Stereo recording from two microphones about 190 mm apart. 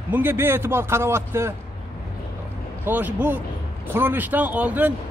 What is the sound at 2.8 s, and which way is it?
Speech, 10° right (ahead or behind).